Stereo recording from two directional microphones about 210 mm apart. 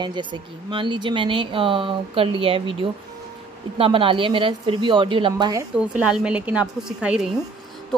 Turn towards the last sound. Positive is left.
turn(degrees=-5)  # may be behind; listen again after turning